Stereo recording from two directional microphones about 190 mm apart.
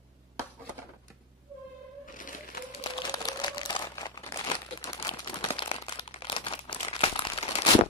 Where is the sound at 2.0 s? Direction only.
45° left (ahead or behind).